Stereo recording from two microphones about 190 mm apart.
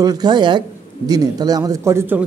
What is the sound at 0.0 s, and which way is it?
Speech, 20° right (ahead or behind).